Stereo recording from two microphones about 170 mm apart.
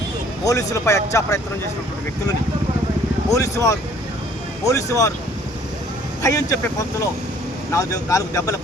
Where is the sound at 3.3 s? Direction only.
20° left (ahead or behind).